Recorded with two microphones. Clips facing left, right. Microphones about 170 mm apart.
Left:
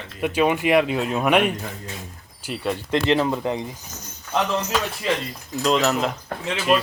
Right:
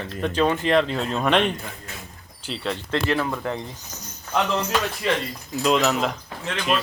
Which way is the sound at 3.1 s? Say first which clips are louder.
Left 6 dB; 20° left (ahead or behind).